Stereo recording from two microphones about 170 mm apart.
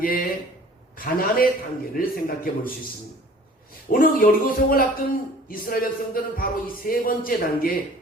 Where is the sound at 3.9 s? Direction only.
55° left (ahead or behind).